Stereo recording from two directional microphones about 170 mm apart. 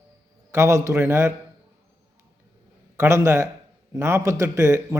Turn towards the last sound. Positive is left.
turn(degrees=-15)  # may be behind; listen again after turning